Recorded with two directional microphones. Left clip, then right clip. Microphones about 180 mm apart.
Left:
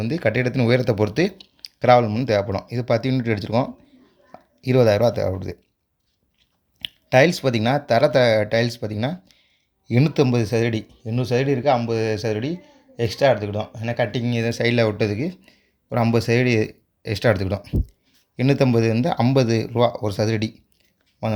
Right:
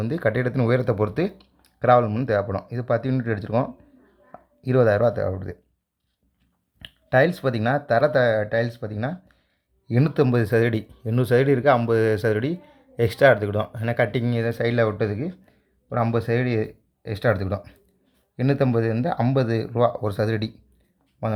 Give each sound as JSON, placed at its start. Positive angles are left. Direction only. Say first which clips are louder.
{"t": 0.0, "sound": "speech", "louder": "left 2 dB", "side_deg": 5}
{"t": 6.7, "sound": "speech", "louder": "left 3 dB", "side_deg": 10}
{"t": 14.3, "sound": "speech", "louder": "left 3 dB", "side_deg": 10}